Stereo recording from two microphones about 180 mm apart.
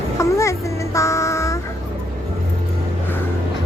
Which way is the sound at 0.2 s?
15° left (ahead or behind).